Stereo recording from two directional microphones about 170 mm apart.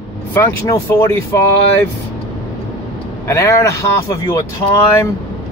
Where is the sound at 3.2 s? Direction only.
15° left (ahead or behind).